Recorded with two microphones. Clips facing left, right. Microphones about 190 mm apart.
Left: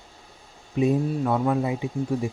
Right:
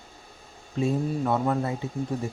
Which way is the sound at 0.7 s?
15° left (ahead or behind).